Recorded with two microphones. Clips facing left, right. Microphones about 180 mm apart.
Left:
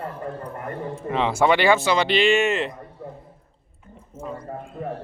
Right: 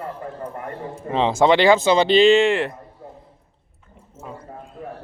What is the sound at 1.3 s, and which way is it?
Speech, 15° right (ahead or behind).